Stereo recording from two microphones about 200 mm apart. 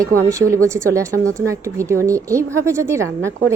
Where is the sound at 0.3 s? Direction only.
15° right (ahead or behind).